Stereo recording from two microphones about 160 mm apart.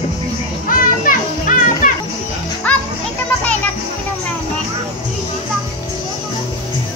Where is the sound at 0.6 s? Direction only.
60° left (ahead or behind).